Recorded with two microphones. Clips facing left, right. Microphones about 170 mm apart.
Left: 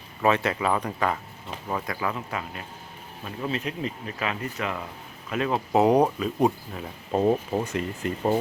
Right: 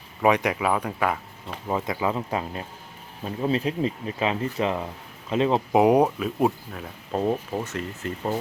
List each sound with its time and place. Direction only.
0.2 s speech: 15° right (ahead or behind)
1.6 s speech: 20° right (ahead or behind)
5.7 s speech: 10° right (ahead or behind); by 8.4 s 15° left (ahead or behind)